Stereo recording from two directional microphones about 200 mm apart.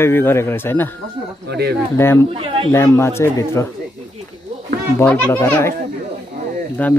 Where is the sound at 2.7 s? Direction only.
15° left (ahead or behind).